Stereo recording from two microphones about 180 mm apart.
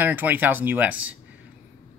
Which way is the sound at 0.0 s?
10° right (ahead or behind).